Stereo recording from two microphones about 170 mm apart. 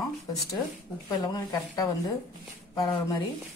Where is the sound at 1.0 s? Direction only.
20° left (ahead or behind).